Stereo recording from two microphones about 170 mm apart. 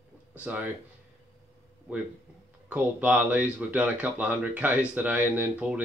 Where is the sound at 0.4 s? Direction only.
10° right (ahead or behind).